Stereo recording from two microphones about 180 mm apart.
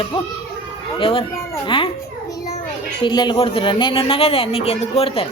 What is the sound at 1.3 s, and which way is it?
Speech, 15° left (ahead or behind).